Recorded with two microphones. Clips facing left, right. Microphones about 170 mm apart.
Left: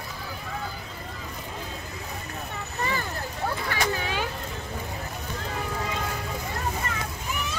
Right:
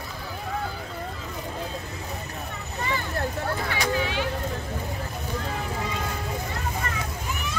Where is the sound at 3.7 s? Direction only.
45° left (ahead or behind).